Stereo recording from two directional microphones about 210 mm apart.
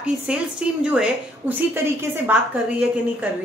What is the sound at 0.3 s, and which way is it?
Speech, 5° right (ahead or behind).